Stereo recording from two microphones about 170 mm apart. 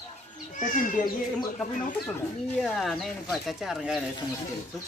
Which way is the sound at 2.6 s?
Centre (ahead or behind).